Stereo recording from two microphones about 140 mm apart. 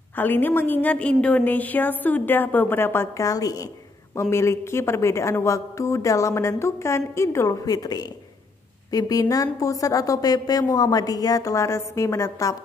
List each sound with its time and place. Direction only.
0.1 s a woman's voice: 15° left (ahead or behind)